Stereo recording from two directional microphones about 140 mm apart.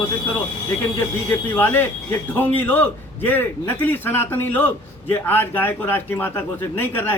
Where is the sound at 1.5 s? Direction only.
15° left (ahead or behind).